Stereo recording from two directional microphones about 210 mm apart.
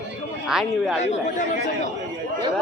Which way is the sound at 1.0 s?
35° left (ahead or behind).